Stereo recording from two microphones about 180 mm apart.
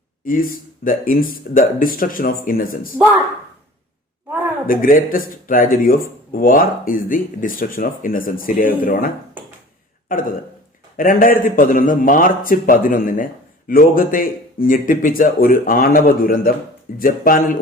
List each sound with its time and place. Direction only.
0.3 s speech: 50° left (ahead or behind)
4.6 s speech: 50° left (ahead or behind)
10.1 s a man's voice: 50° left (ahead or behind)